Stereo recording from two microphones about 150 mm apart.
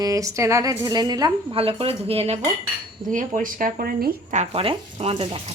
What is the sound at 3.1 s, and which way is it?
Speech, 60° right (ahead or behind).